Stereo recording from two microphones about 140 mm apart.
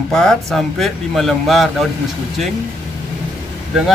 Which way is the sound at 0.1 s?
5° left (ahead or behind).